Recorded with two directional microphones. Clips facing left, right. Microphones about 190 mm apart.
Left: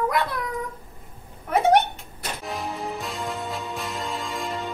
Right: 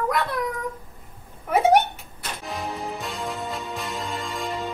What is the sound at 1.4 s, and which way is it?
Music, 5° right (ahead or behind).